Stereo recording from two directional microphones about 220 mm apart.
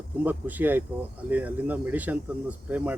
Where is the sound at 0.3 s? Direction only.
10° right (ahead or behind).